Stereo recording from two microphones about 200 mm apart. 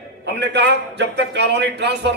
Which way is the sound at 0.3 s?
60° right (ahead or behind).